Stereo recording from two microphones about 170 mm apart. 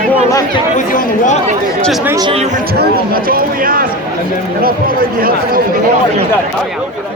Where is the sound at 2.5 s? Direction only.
60° right (ahead or behind).